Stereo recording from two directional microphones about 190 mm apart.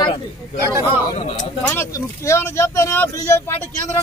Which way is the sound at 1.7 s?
15° left (ahead or behind).